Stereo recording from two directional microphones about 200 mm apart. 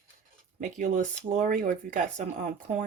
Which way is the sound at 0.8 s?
40° right (ahead or behind).